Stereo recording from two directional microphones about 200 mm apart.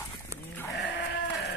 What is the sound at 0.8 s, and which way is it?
Sheep, 55° left (ahead or behind).